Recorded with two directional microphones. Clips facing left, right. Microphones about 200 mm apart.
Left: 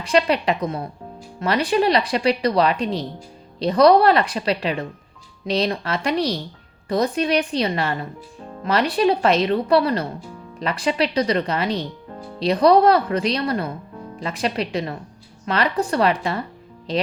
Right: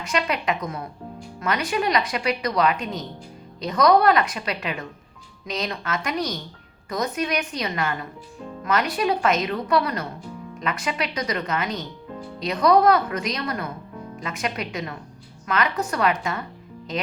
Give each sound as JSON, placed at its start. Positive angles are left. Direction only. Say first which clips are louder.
{"t": 0.0, "sound": "speech", "louder": "left 6 dB", "side_deg": 30}